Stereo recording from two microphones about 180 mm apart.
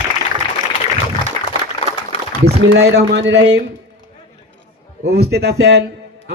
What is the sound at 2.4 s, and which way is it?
Speech, 65° right (ahead or behind).